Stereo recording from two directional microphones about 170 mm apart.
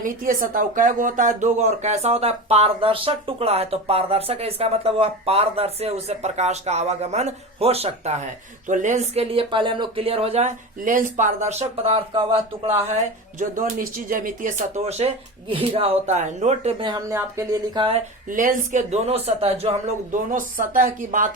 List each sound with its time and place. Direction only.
0.0 s speech: 50° right (ahead or behind); by 10.5 s 35° right (ahead or behind)
10.8 s speech: 50° right (ahead or behind); by 12.8 s 35° right (ahead or behind)
13.4 s speech: 50° right (ahead or behind)
16.8 s speech: 20° right (ahead or behind)
17.7 s speech: 30° right (ahead or behind)
18.3 s speech: 50° right (ahead or behind)
20.1 s speech: 50° right (ahead or behind)